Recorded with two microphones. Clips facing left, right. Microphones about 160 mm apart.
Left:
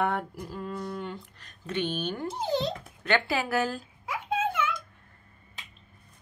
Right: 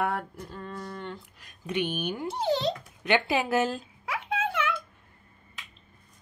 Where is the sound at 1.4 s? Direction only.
15° right (ahead or behind).